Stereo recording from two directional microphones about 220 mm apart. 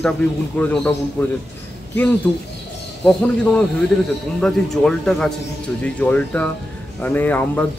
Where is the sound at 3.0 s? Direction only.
5° left (ahead or behind).